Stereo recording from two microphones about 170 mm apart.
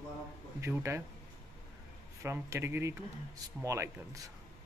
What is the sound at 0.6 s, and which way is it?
Speech, 15° right (ahead or behind).